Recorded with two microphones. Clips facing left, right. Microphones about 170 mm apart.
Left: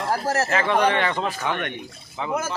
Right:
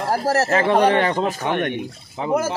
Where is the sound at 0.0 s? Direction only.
35° right (ahead or behind).